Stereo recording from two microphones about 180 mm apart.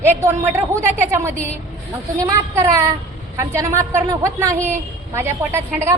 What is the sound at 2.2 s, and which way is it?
A woman's voice, 15° right (ahead or behind).